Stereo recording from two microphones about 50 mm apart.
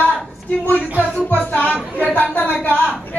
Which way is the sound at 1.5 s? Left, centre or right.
Left.